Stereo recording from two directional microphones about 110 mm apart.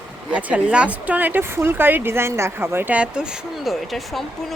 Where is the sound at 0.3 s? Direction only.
10° right (ahead or behind).